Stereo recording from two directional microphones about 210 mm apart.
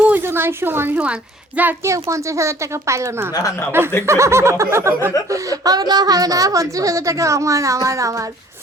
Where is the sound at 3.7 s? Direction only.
10° right (ahead or behind).